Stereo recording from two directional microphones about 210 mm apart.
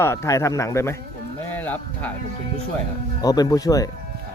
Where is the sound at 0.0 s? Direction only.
15° left (ahead or behind).